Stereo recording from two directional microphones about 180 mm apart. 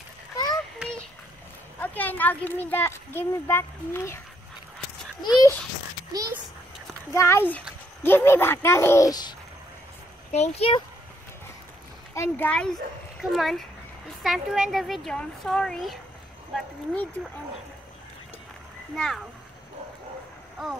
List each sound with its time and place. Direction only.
1.8 s a child's voice: 10° left (ahead or behind)
5.2 s a child's voice: 20° left (ahead or behind)
6.1 s a child's voice: 20° right (ahead or behind)
7.1 s a child's voice: 15° left (ahead or behind)
10.3 s speech: 35° left (ahead or behind)
12.1 s a child's voice: 10° left (ahead or behind)
18.9 s a child's voice: centre (ahead or behind)